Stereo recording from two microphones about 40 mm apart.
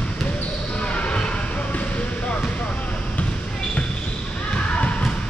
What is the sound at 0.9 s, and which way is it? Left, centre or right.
Basketball bounce, left.